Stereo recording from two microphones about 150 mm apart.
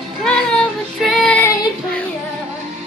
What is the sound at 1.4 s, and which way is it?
Child singing, 20° left (ahead or behind).